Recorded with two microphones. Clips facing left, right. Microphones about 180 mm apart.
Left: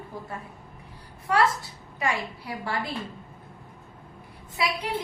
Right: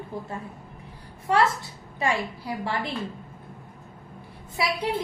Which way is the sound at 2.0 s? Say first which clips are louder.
Right 2 dB; 25° right (ahead or behind).